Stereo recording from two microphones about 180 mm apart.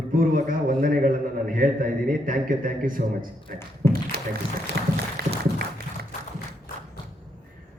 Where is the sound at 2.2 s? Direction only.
50° right (ahead or behind).